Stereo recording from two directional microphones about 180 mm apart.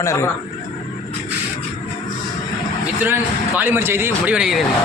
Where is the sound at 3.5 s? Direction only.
10° right (ahead or behind).